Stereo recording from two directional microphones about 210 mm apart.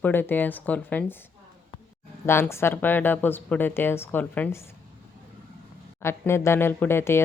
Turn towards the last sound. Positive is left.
turn(degrees=10)  # may be behind; listen again after turning